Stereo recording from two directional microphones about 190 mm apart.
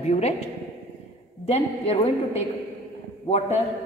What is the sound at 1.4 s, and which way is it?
Speech, 30° left (ahead or behind).